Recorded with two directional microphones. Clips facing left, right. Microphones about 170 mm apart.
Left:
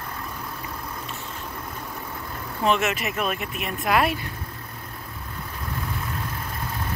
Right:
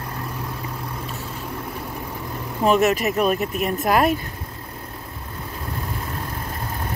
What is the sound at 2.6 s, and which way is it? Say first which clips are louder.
Speech: right 6 dB; 40° right (ahead or behind).